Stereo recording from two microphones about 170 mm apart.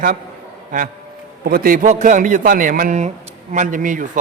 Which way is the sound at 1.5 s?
55° right (ahead or behind).